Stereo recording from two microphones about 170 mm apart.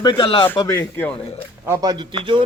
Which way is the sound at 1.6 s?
15° right (ahead or behind).